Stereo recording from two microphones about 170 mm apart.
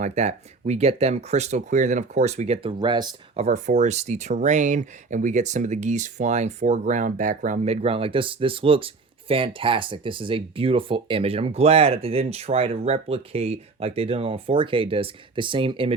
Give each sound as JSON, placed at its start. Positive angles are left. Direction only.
{"t": 0.0, "sound": "speech", "side_deg": -45}
{"t": 2.7, "sound": "speech", "side_deg": -25}
{"t": 3.4, "sound": "speech", "side_deg": -45}